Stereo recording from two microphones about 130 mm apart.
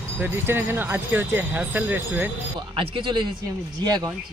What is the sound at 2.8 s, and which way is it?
Speech, 40° right (ahead or behind).